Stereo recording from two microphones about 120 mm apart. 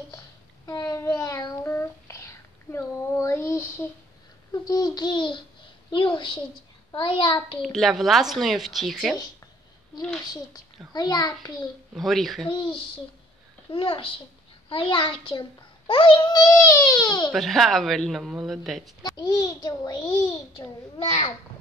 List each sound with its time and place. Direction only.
0.7 s a child's voice: 35° left (ahead or behind)
7.6 s a woman's voice: centre (ahead or behind)
9.9 s a child's voice: 30° left (ahead or behind)
11.9 s a woman's voice: centre (ahead or behind)
12.4 s a child's voice: 45° left (ahead or behind)
17.3 s a woman's voice: centre (ahead or behind)
19.0 s a child's voice: 35° left (ahead or behind)